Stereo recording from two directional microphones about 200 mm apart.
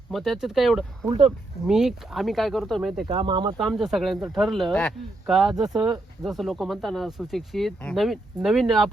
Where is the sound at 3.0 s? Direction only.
20° right (ahead or behind).